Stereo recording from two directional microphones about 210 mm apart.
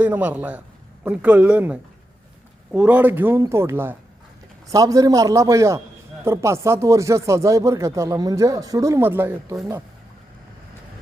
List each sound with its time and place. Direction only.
0.0 s speech: 5° right (ahead or behind)